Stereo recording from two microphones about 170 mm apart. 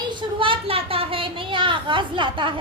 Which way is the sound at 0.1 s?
30° right (ahead or behind).